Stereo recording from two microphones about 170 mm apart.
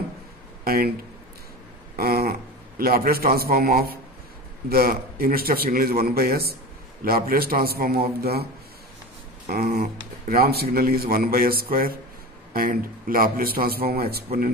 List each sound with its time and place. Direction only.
0.7 s a man's voice: 65° right (ahead or behind)
2.0 s a man's voice: 60° right (ahead or behind)
9.5 s a man's voice: 60° right (ahead or behind)